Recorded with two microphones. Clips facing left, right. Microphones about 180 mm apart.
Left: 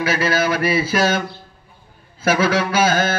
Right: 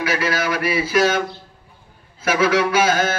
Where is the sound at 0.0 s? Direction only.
25° left (ahead or behind).